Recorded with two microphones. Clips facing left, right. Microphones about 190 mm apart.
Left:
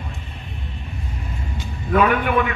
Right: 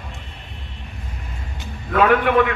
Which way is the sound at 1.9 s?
75° right (ahead or behind).